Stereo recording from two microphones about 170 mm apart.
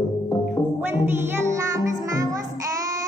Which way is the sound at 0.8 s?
10° right (ahead or behind).